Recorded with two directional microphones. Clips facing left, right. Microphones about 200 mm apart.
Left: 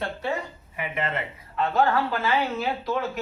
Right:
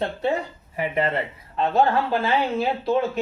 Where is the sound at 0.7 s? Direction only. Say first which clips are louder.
Right 6 dB; 35° right (ahead or behind).